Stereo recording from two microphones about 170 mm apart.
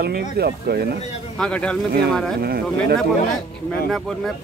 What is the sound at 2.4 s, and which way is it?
Speech, 65° right (ahead or behind).